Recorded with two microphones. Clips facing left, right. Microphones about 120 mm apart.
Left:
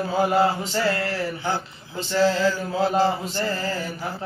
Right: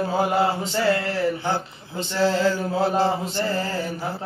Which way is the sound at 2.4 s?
55° right (ahead or behind).